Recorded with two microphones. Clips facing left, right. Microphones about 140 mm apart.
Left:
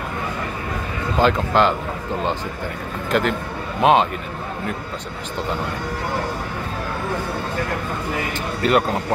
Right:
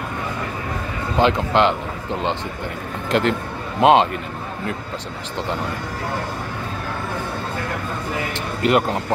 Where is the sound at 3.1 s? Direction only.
30° right (ahead or behind).